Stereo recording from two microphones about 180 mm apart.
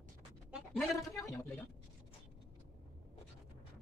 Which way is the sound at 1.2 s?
15° left (ahead or behind).